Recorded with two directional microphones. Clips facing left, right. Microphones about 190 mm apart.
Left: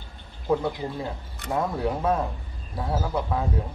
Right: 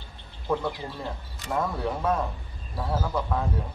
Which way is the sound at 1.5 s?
15° left (ahead or behind).